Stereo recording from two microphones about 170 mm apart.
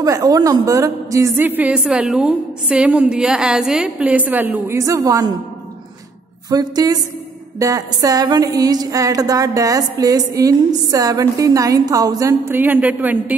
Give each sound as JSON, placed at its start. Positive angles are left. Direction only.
{"t": 0.0, "sound": "a woman's voice", "side_deg": -20}
{"t": 6.5, "sound": "a woman's voice", "side_deg": -25}